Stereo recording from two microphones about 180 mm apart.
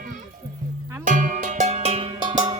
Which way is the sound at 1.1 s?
45° right (ahead or behind).